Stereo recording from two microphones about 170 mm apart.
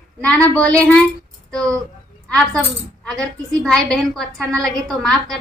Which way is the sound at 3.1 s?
5° left (ahead or behind).